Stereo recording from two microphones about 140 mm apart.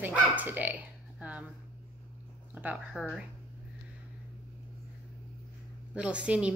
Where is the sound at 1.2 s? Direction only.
10° right (ahead or behind).